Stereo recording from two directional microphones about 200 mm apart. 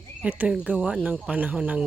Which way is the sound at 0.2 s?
10° right (ahead or behind).